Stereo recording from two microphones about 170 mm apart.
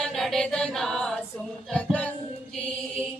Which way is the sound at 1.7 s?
5° left (ahead or behind).